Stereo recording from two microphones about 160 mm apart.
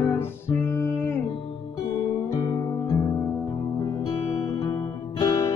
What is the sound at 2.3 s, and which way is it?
Music, 30° left (ahead or behind).